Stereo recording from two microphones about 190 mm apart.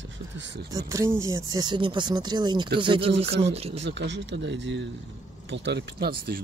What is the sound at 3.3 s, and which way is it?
Speech, 65° right (ahead or behind).